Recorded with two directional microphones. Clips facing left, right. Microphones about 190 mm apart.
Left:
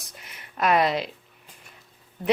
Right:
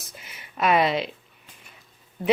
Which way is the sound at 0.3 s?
Centre (ahead or behind).